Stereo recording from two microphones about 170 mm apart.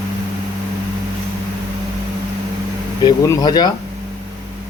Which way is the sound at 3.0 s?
25° left (ahead or behind).